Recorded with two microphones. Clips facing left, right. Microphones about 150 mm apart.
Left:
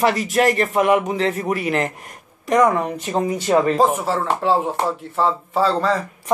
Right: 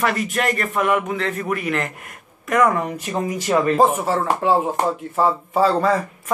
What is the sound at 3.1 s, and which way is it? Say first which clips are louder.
Speech: left 2 dB; 30° left (ahead or behind).